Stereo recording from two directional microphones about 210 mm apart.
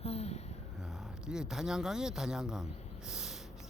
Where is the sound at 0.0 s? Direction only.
30° left (ahead or behind).